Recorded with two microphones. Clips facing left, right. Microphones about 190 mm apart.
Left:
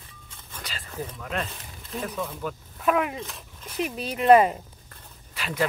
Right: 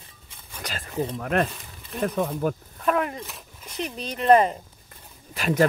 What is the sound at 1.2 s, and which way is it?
Speech, 50° right (ahead or behind).